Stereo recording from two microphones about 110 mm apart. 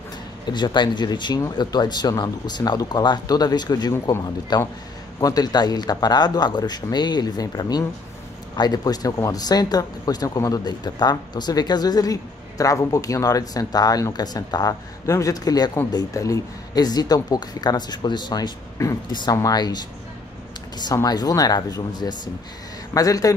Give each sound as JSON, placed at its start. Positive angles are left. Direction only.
{"t": 0.5, "sound": "speech", "side_deg": 45}